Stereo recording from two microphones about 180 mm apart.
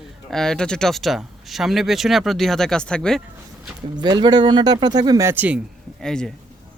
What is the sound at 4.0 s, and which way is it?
Speech, 25° right (ahead or behind).